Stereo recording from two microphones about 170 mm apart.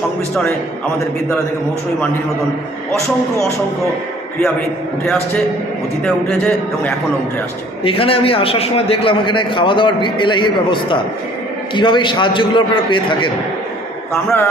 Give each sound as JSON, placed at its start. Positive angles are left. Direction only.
{"t": 6.2, "sound": "a man's voice", "side_deg": 5}
{"t": 7.9, "sound": "a man's voice", "side_deg": 35}